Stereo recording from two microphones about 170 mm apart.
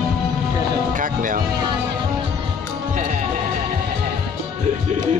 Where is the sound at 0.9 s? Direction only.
50° right (ahead or behind).